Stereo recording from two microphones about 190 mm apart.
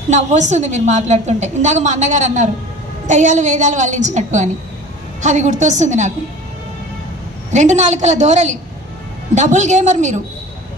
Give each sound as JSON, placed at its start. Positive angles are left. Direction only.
{"t": 0.1, "sound": "a woman's voice", "side_deg": -40}
{"t": 7.5, "sound": "a woman's voice", "side_deg": -40}